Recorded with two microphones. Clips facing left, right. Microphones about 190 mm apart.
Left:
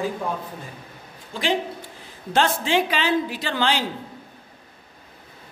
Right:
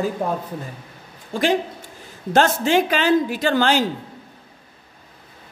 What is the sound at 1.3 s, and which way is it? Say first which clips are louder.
Speech: right 4 dB; 45° right (ahead or behind).